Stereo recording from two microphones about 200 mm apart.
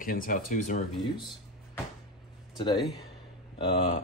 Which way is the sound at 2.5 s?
20° left (ahead or behind).